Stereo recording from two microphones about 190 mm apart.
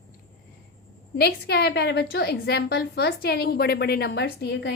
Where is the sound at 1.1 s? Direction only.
60° left (ahead or behind).